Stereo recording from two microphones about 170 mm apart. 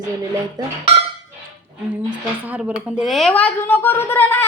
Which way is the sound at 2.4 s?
10° right (ahead or behind).